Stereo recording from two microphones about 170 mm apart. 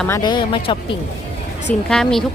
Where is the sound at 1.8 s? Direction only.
5° left (ahead or behind).